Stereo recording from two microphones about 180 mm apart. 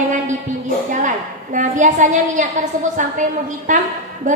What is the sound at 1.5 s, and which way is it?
Speech, 45° right (ahead or behind).